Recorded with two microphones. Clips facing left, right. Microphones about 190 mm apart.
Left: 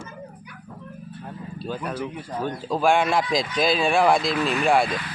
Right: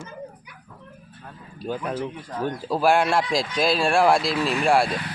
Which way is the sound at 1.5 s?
15° right (ahead or behind).